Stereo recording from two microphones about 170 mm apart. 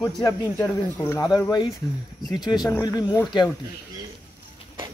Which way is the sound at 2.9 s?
25° left (ahead or behind).